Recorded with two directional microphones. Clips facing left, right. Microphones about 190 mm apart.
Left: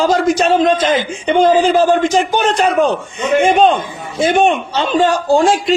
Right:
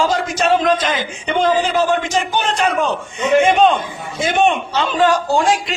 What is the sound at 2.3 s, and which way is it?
Speech, 40° left (ahead or behind).